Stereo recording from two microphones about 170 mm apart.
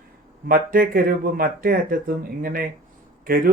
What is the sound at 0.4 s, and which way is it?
Speech, 55° right (ahead or behind).